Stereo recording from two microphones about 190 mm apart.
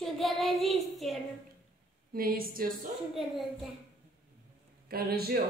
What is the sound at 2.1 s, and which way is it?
Speech, 50° right (ahead or behind).